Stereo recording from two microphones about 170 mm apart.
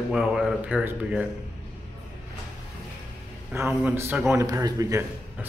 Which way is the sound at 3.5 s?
15° right (ahead or behind).